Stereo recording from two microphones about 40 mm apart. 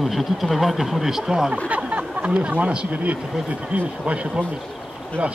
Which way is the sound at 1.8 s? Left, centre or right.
Right.